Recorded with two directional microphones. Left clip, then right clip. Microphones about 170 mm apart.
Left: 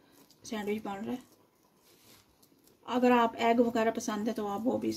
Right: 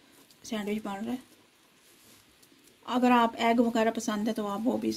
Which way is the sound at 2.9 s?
30° right (ahead or behind).